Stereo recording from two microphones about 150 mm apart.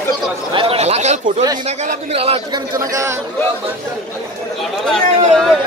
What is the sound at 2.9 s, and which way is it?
Speech, 20° right (ahead or behind).